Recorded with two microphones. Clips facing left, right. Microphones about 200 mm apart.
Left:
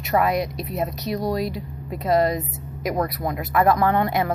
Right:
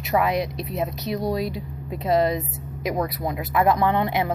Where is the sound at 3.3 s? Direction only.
15° right (ahead or behind).